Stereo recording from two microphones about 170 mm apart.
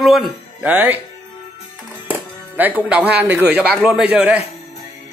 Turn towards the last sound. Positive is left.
turn(degrees=-10)  # may be behind; listen again after turning